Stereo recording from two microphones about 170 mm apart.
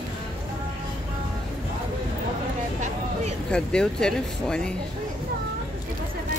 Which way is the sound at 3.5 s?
5° left (ahead or behind).